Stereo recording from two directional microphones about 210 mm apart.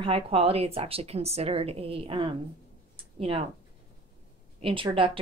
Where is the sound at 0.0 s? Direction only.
25° right (ahead or behind).